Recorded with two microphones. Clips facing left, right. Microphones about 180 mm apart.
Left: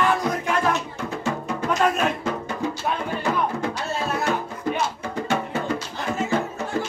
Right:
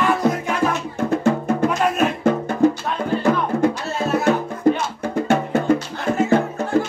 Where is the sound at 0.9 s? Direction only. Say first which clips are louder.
Right 9 dB; 50° right (ahead or behind).